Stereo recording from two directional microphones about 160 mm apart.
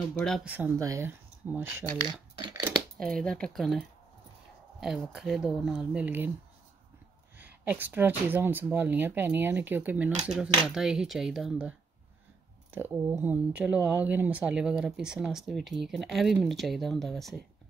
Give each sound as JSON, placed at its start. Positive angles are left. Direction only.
{"t": 0.2, "sound": "speech", "side_deg": 5}
{"t": 0.7, "sound": "speech", "side_deg": -20}
{"t": 2.3, "sound": "speech", "side_deg": -25}
{"t": 3.0, "sound": "speech", "side_deg": 5}
{"t": 7.3, "sound": "speech", "side_deg": -10}
{"t": 12.7, "sound": "speech", "side_deg": -15}